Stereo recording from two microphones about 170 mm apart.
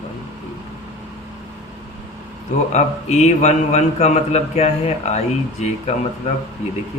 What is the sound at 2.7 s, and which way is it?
A man's voice, 40° left (ahead or behind).